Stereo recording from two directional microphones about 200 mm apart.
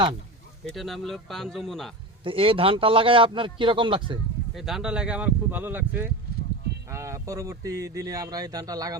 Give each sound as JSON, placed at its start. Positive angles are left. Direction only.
{"t": 0.6, "sound": "speech", "side_deg": 0}
{"t": 2.2, "sound": "a man's voice", "side_deg": -25}
{"t": 4.5, "sound": "speech", "side_deg": 0}